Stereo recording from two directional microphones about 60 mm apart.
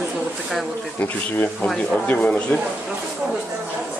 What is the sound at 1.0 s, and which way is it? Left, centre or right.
Speech, left.